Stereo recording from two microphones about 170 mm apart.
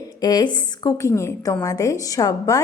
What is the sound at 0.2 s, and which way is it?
A woman's voice, 25° left (ahead or behind).